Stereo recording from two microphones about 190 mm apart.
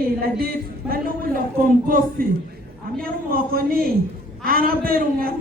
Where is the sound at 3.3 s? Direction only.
50° right (ahead or behind).